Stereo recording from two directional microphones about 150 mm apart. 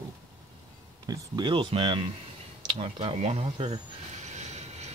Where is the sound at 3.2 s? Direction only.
50° right (ahead or behind).